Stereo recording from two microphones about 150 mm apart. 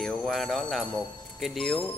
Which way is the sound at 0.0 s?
5° left (ahead or behind).